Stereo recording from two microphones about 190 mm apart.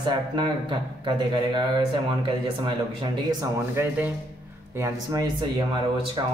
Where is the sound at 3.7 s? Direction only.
10° right (ahead or behind).